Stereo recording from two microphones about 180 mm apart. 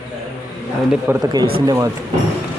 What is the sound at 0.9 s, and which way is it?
Speech, 10° right (ahead or behind).